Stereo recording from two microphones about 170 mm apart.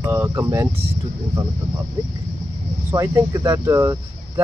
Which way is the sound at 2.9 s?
15° right (ahead or behind).